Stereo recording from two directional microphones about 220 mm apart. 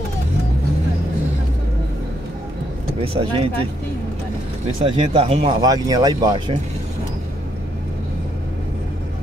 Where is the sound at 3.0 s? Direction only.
25° right (ahead or behind).